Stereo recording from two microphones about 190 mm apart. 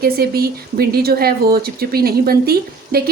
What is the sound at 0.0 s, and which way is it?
A woman's voice, 55° right (ahead or behind).